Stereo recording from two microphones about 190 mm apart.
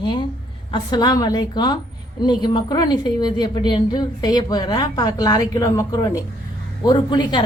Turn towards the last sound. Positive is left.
turn(degrees=25)  # may be behind; listen again after turning